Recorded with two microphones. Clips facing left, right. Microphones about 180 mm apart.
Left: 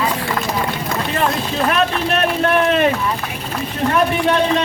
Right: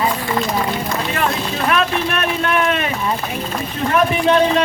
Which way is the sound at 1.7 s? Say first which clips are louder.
Right 1 dB; 35° left (ahead or behind).